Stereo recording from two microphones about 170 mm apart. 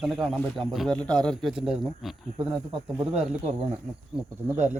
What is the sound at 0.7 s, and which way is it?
Speech, 5° left (ahead or behind).